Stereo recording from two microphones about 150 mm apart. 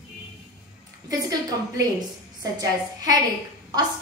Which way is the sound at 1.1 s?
25° right (ahead or behind).